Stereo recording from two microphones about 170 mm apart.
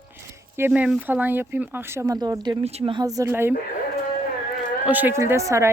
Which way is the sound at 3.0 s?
20° right (ahead or behind).